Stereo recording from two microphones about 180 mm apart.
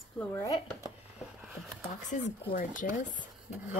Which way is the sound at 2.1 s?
45° left (ahead or behind).